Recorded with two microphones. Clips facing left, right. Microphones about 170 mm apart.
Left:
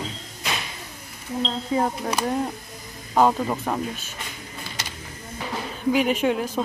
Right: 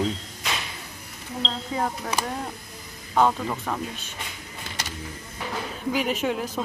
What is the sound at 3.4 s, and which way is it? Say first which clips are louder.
Speech: left 3 dB; 20° left (ahead or behind).